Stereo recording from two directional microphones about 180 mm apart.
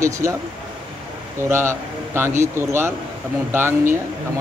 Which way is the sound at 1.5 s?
15° right (ahead or behind).